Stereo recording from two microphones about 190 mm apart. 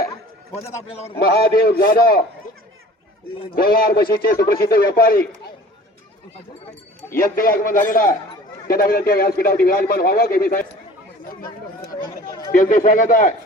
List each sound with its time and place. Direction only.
0.9 s speech: 35° left (ahead or behind)
1.2 s a man's voice: 50° left (ahead or behind)
3.5 s a man's voice: 50° left (ahead or behind)
7.3 s a man's voice: 50° left (ahead or behind)
12.5 s a man's voice: 45° left (ahead or behind)